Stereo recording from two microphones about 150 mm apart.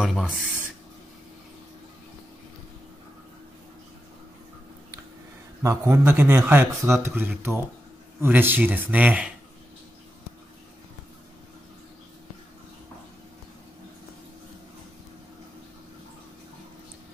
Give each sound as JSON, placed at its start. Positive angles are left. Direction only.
{"t": 0.0, "sound": "speech", "side_deg": 0}
{"t": 5.6, "sound": "speech", "side_deg": -20}